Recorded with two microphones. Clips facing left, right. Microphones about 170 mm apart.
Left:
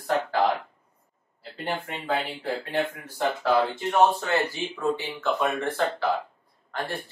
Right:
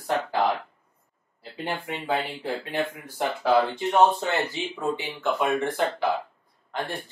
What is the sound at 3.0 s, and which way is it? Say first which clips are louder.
Speech: even; 15° right (ahead or behind).